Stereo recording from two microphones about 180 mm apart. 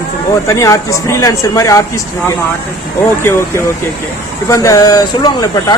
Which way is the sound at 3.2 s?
15° left (ahead or behind).